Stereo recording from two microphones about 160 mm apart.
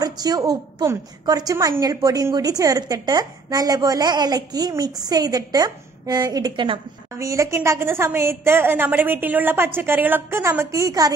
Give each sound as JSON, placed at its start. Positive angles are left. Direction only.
{"t": 0.0, "sound": "a woman's voice", "side_deg": -25}
{"t": 7.2, "sound": "a woman's voice", "side_deg": -20}